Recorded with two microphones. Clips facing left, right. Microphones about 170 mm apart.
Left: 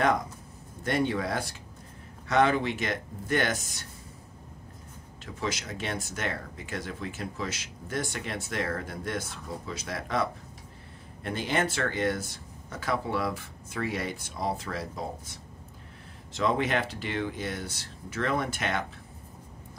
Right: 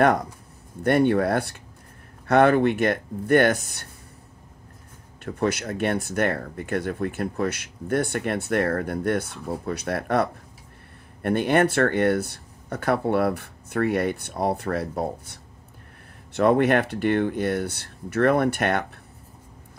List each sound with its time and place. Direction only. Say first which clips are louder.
0.8 s speech: right 9 dB; 60° right (ahead or behind)
5.2 s speech: right 9 dB; 60° right (ahead or behind)
16.3 s speech: right 8 dB; 60° right (ahead or behind)